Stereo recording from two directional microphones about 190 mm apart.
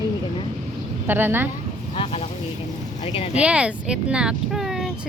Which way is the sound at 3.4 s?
5° right (ahead or behind).